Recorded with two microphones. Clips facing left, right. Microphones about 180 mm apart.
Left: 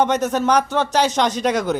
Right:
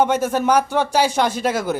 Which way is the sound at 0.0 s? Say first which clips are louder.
Even; 10° right (ahead or behind).